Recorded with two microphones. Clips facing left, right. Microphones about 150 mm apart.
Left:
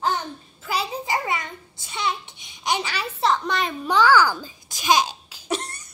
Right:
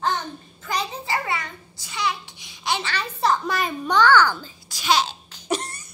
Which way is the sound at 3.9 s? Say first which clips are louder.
Even; 10° left (ahead or behind).